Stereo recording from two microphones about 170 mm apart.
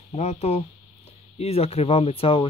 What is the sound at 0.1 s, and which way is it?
Speech, 40° left (ahead or behind).